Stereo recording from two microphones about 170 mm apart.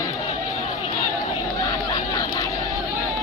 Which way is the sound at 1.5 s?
20° left (ahead or behind).